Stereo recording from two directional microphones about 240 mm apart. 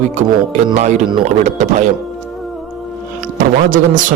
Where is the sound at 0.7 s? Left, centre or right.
Right.